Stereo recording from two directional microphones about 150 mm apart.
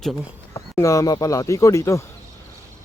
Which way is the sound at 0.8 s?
20° left (ahead or behind).